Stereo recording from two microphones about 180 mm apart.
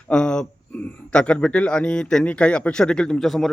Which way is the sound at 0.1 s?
5° left (ahead or behind).